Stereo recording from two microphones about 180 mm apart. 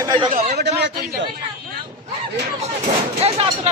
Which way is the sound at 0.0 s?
25° right (ahead or behind).